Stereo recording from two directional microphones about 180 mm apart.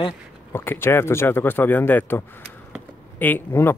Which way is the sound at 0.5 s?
10° left (ahead or behind).